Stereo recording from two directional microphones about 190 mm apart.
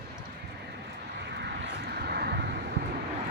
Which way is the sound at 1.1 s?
60° right (ahead or behind).